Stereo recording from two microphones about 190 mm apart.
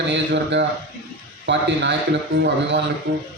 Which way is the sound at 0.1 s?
70° right (ahead or behind).